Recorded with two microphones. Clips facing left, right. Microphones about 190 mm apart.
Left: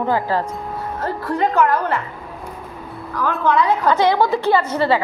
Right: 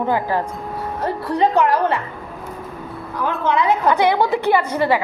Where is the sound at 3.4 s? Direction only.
20° right (ahead or behind).